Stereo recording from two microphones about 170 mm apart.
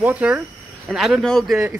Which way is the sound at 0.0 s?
10° right (ahead or behind).